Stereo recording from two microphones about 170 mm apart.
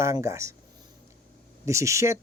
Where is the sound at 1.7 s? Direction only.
15° right (ahead or behind).